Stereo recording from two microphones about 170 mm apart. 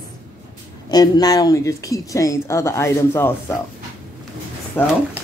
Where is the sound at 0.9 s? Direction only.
25° left (ahead or behind).